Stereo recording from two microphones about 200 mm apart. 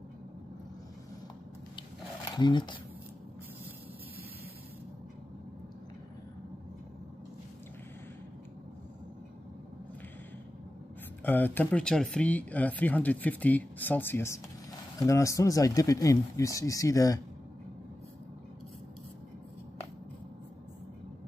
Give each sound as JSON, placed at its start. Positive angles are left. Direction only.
{"t": 2.3, "sound": "speech", "side_deg": 25}
{"t": 11.2, "sound": "speech", "side_deg": 10}